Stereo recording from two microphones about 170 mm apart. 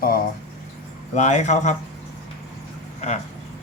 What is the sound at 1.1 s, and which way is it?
Speech, 45° left (ahead or behind).